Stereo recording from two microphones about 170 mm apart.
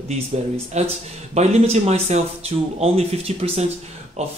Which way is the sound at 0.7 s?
40° right (ahead or behind).